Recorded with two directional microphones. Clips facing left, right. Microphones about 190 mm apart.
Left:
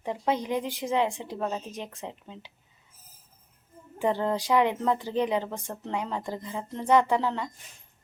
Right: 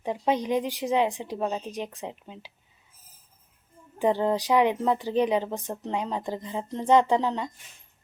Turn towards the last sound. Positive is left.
turn(degrees=-20)  # may be behind; listen again after turning